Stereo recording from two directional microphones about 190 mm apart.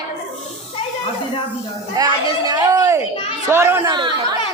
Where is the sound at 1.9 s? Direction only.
20° right (ahead or behind).